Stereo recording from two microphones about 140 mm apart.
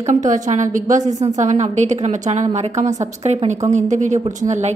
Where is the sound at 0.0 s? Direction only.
60° right (ahead or behind).